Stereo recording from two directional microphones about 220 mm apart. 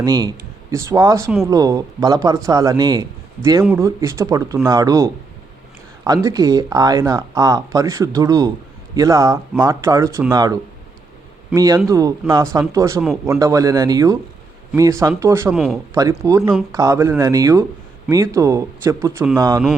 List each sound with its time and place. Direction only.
0.0 s speech: 20° right (ahead or behind)
6.2 s speech: 15° right (ahead or behind)
15.5 s speech: centre (ahead or behind)
16.0 s speech: 15° right (ahead or behind)
16.4 s speech: 5° right (ahead or behind)